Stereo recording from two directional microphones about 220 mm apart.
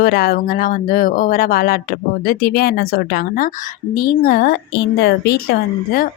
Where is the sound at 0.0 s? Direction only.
40° left (ahead or behind).